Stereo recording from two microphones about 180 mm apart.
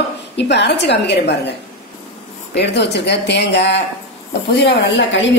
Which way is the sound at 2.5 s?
70° left (ahead or behind).